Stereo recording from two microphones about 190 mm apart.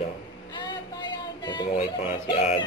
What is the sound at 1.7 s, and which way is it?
Speech, 45° left (ahead or behind).